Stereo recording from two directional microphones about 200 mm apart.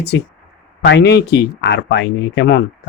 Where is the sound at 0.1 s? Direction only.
60° left (ahead or behind).